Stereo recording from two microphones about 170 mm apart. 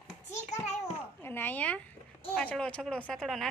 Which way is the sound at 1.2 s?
10° left (ahead or behind).